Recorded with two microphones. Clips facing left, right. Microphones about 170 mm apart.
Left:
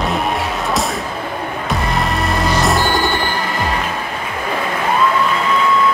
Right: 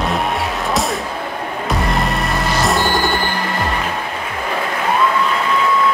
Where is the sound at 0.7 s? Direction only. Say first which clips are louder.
Even; centre (ahead or behind).